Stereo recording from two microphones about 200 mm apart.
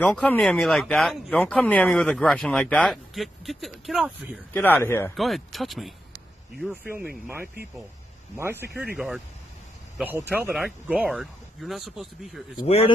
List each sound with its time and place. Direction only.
0.0 s speech: 5° left (ahead or behind)
4.6 s speech: 10° left (ahead or behind)
5.1 s speech: centre (ahead or behind)
8.4 s speech: 10° right (ahead or behind)
8.9 s speech: centre (ahead or behind)
12.6 s a man's voice: 30° left (ahead or behind)